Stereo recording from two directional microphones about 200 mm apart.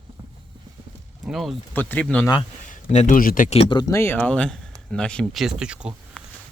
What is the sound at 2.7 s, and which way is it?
Speech, 40° left (ahead or behind).